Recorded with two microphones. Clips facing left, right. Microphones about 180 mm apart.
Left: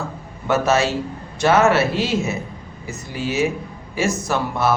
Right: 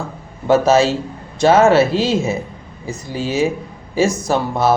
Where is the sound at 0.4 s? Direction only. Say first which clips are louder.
Right 6 dB; 30° right (ahead or behind).